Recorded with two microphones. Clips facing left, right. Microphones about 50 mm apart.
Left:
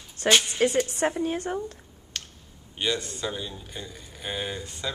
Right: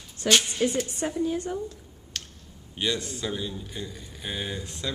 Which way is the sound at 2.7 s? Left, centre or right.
Centre.